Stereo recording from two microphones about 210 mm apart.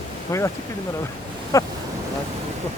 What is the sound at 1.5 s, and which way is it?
Speech, 15° left (ahead or behind).